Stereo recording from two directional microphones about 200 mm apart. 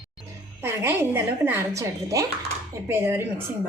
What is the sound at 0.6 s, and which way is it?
A woman's voice, 10° right (ahead or behind).